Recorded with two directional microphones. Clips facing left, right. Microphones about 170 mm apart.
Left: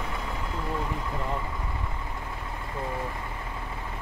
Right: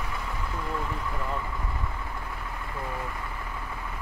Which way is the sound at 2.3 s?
25° left (ahead or behind).